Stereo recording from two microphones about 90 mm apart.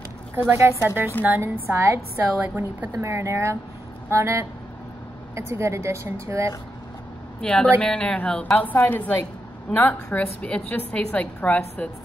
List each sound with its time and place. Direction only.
0.4 s a woman's voice: 25° right (ahead or behind)
2.4 s a woman's voice: 15° right (ahead or behind)
2.9 s a woman's voice: 30° right (ahead or behind)
7.4 s a woman's voice: 10° left (ahead or behind)